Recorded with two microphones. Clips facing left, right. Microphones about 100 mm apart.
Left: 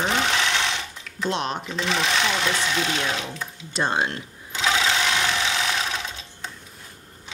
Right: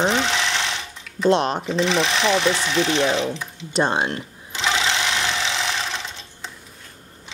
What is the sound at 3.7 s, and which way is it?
Speech, 25° right (ahead or behind).